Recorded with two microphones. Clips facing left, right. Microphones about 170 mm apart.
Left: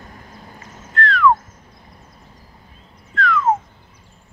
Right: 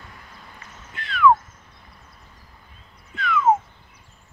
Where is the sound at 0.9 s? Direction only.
Centre (ahead or behind).